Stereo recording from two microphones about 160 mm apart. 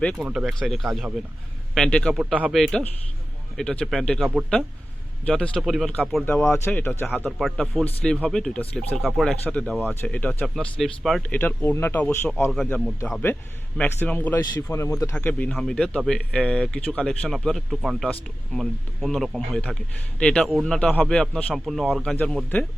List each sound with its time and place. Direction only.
0.0 s a man's voice: 5° left (ahead or behind)
6.5 s speech: 10° left (ahead or behind)
7.3 s a man's voice: centre (ahead or behind)
13.7 s a man's voice: 10° left (ahead or behind)
22.1 s speech: 10° left (ahead or behind)